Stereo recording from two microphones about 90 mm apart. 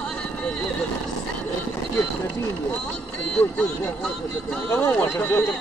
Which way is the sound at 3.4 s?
15° left (ahead or behind).